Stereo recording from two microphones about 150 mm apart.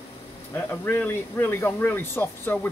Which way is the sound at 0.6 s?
15° left (ahead or behind).